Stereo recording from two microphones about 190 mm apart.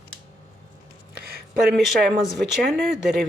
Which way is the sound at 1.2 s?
55° right (ahead or behind).